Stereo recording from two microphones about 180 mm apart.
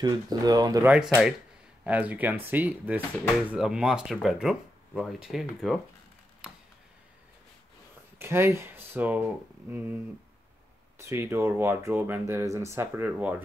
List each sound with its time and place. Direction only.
0.0 s speech: 20° right (ahead or behind)
0.8 s speech: 5° right (ahead or behind)
8.2 s speech: 15° right (ahead or behind)
11.0 s speech: 15° right (ahead or behind)